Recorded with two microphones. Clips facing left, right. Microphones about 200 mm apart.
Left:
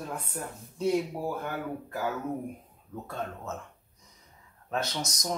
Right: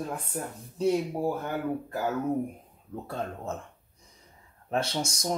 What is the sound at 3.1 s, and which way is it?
Speech, 30° right (ahead or behind).